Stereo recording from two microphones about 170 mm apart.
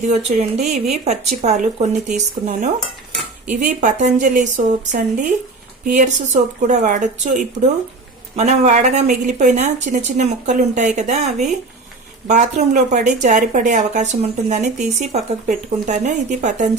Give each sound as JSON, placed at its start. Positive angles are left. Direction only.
{"t": 0.0, "sound": "speech", "side_deg": -45}
{"t": 3.1, "sound": "cutlery", "side_deg": 0}
{"t": 3.5, "sound": "speech", "side_deg": -50}